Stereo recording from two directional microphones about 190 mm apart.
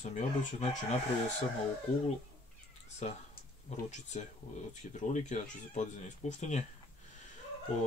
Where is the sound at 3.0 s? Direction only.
35° left (ahead or behind).